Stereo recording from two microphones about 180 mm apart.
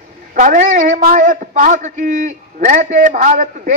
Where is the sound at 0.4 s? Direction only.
45° right (ahead or behind).